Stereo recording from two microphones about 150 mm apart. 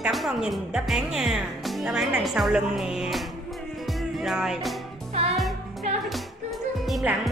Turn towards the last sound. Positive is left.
turn(degrees=0)  # may be behind; listen again after turning